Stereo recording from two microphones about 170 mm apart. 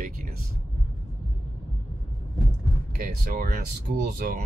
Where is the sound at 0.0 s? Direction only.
55° right (ahead or behind).